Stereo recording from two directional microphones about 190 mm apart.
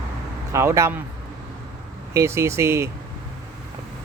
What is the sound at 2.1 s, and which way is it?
Speech, 15° right (ahead or behind).